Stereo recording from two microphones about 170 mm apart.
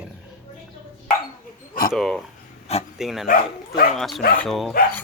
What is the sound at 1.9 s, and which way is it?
Speech, centre (ahead or behind).